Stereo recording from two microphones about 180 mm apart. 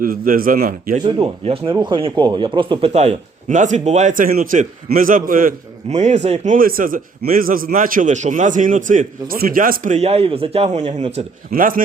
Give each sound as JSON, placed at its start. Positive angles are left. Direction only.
{"t": 0.0, "sound": "speech", "side_deg": -55}
{"t": 1.0, "sound": "speech", "side_deg": -30}
{"t": 11.5, "sound": "speech", "side_deg": -50}